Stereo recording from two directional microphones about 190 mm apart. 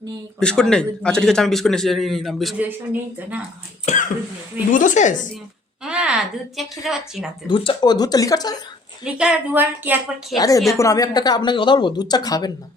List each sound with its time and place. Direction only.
0.3 s a man's voice: 5° left (ahead or behind)
3.9 s a woman's voice: 35° left (ahead or behind)
5.8 s speech: 5° right (ahead or behind)
7.4 s speech: 25° left (ahead or behind)
9.1 s a woman's voice: 5° right (ahead or behind)
10.3 s speech: 20° left (ahead or behind)